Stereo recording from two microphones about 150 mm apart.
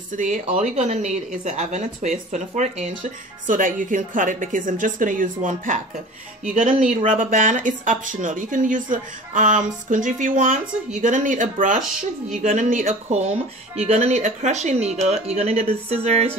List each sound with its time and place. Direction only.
0.1 s speech: 55° right (ahead or behind)
7.1 s speech: 60° right (ahead or behind)